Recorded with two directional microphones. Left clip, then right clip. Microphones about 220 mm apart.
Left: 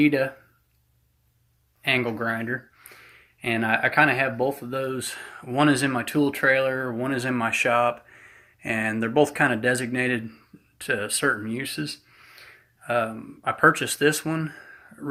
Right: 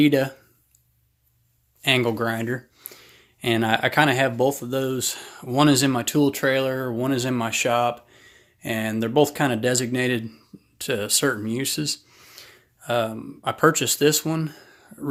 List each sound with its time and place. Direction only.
0.0 s speech: 55° right (ahead or behind)
1.8 s speech: 55° right (ahead or behind)